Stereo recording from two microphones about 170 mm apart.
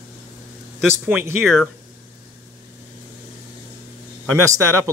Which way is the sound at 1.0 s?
10° right (ahead or behind).